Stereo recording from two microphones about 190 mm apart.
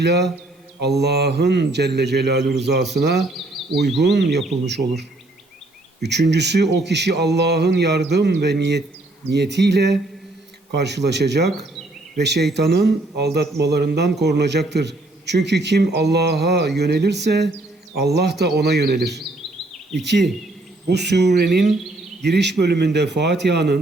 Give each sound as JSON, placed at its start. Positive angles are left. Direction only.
{"t": 0.0, "sound": "speech", "side_deg": -60}